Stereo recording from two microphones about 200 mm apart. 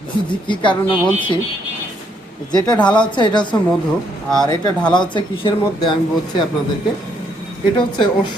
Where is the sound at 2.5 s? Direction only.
20° left (ahead or behind).